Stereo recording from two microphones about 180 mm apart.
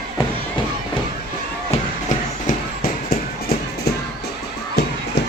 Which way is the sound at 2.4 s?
55° left (ahead or behind).